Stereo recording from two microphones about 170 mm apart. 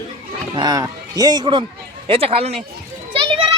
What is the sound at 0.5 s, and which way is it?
Speech, 20° right (ahead or behind).